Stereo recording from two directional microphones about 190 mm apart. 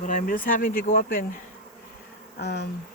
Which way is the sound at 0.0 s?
45° left (ahead or behind).